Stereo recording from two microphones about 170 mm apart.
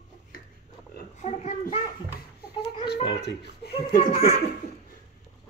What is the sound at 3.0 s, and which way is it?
Speech, 85° left.